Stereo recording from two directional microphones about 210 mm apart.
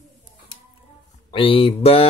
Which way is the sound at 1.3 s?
25° left (ahead or behind).